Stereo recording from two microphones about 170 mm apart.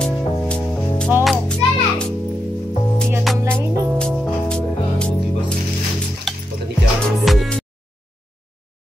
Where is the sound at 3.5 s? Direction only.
15° right (ahead or behind).